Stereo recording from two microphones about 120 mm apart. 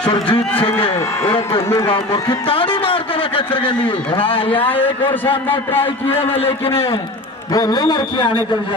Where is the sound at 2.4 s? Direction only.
45° left (ahead or behind).